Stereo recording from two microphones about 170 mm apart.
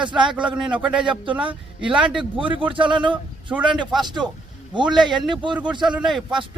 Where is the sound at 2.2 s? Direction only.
30° right (ahead or behind).